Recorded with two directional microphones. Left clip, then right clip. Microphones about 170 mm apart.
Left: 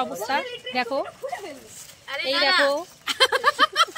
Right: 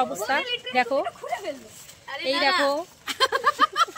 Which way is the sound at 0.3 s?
15° right (ahead or behind).